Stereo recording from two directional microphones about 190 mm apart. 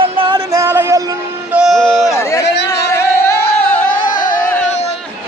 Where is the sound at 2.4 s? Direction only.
65° left (ahead or behind).